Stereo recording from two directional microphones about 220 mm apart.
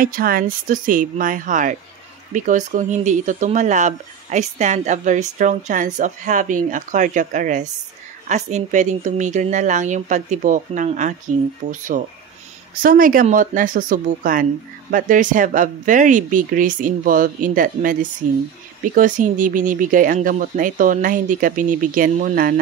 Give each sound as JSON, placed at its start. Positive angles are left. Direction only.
{"t": 0.0, "sound": "speech", "side_deg": -40}